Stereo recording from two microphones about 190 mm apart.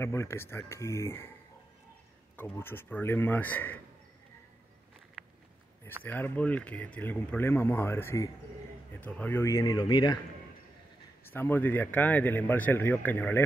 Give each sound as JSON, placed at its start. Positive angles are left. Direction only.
{"t": 0.0, "sound": "speech", "side_deg": 15}
{"t": 2.3, "sound": "speech", "side_deg": 10}
{"t": 5.2, "sound": "a sound", "side_deg": 0}
{"t": 6.0, "sound": "speech", "side_deg": 10}
{"t": 11.2, "sound": "speech", "side_deg": 10}